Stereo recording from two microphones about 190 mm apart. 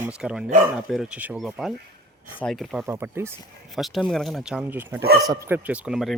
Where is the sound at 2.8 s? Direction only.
15° right (ahead or behind).